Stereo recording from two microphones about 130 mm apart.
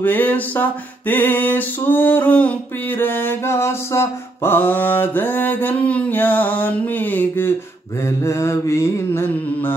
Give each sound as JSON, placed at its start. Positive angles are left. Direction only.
{"t": 0.0, "sound": "music", "side_deg": 15}
{"t": 8.2, "sound": "mantra", "side_deg": 20}